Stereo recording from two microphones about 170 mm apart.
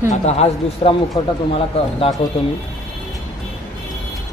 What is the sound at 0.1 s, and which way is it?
Speech, 40° left (ahead or behind).